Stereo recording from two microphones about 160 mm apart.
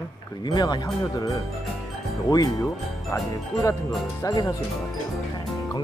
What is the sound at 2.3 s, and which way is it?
Speech, 25° left (ahead or behind).